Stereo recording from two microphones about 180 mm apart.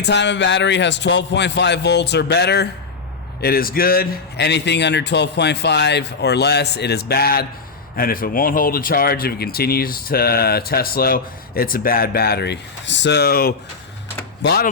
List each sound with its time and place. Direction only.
0.0 s a man's voice: 75° left (ahead or behind)
3.4 s a man's voice: 55° left (ahead or behind)